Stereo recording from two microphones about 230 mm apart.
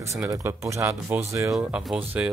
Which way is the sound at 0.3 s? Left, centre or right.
Centre.